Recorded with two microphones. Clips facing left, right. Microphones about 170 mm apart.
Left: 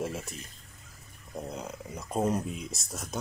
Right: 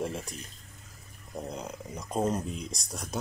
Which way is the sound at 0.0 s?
5° left (ahead or behind).